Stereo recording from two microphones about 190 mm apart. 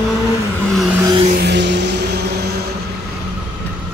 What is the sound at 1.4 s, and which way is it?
Vehicle, 65° right (ahead or behind).